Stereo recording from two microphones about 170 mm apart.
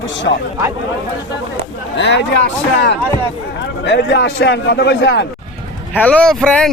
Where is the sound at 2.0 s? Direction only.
90° left.